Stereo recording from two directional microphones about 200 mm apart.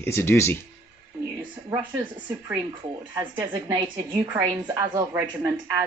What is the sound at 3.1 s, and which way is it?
A woman's voice, 20° right (ahead or behind).